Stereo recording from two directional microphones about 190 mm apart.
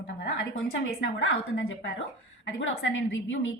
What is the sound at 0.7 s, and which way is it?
A woman's voice, 80° left.